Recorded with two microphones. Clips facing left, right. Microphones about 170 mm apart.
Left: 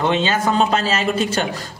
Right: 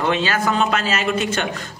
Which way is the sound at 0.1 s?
25° left (ahead or behind).